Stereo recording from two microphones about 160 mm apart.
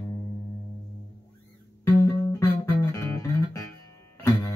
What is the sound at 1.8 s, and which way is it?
Music, 15° left (ahead or behind).